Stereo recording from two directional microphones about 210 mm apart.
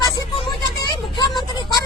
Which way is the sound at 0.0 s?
20° left (ahead or behind).